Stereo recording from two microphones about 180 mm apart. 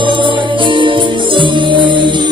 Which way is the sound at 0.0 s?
25° right (ahead or behind).